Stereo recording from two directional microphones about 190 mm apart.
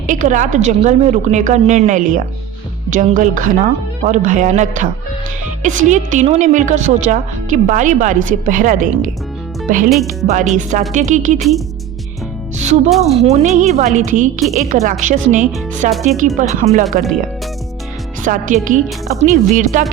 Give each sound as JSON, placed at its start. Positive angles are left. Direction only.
{"t": 0.1, "sound": "a woman's voice", "side_deg": -40}
{"t": 9.9, "sound": "speech", "side_deg": 0}
{"t": 10.2, "sound": "a woman's voice", "side_deg": -40}
{"t": 11.3, "sound": "speech", "side_deg": 0}
{"t": 12.5, "sound": "music", "side_deg": -40}
{"t": 13.1, "sound": "a woman's voice", "side_deg": -35}
{"t": 18.2, "sound": "a woman's voice", "side_deg": -45}